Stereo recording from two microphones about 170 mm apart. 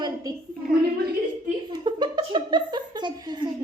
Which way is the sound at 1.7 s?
25° right (ahead or behind).